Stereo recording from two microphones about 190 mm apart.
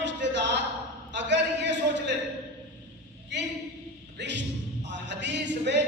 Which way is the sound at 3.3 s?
65° right (ahead or behind).